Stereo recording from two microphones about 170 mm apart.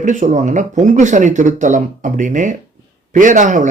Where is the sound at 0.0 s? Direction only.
45° right (ahead or behind).